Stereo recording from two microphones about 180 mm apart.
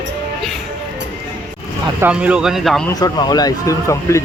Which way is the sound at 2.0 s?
5° right (ahead or behind).